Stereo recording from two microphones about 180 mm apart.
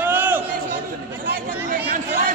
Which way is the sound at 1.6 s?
45° right (ahead or behind).